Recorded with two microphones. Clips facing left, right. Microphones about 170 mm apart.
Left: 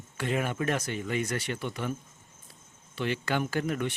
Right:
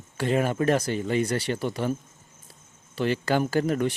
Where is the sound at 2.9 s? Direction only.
40° right (ahead or behind).